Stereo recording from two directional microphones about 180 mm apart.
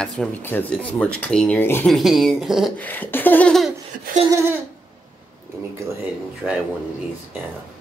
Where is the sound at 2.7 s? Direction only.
10° left (ahead or behind).